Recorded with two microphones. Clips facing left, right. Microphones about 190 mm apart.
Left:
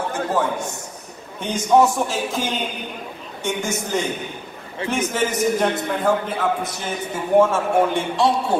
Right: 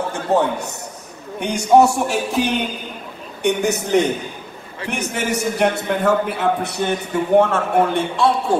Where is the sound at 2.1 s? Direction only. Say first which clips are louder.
Right 5 dB; 65° right (ahead or behind).